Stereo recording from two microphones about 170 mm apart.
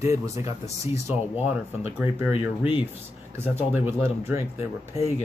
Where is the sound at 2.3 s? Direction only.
30° left (ahead or behind).